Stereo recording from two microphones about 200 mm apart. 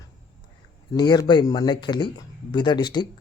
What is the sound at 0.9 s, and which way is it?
Speech, 20° left (ahead or behind).